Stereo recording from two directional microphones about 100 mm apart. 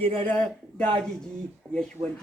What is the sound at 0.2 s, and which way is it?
Speech, 15° left (ahead or behind).